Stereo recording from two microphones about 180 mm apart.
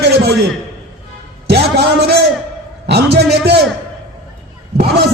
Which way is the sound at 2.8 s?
65° right (ahead or behind).